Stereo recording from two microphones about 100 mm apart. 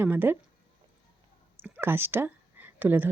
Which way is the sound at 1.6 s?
20° right (ahead or behind).